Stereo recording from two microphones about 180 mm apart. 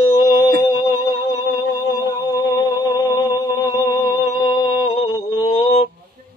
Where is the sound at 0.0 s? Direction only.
15° left (ahead or behind).